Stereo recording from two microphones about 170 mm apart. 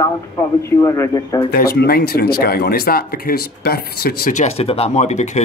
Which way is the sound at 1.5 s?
65° left (ahead or behind).